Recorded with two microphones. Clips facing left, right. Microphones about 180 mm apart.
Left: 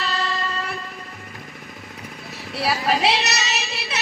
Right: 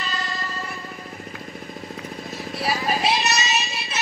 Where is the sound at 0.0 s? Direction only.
65° left (ahead or behind).